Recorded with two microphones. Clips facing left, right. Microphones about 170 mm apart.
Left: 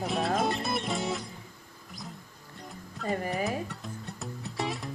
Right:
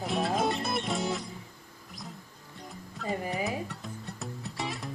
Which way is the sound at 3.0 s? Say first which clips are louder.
Left 2 dB; centre (ahead or behind).